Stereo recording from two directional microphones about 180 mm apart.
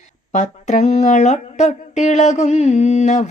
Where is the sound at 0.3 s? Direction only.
40° left (ahead or behind).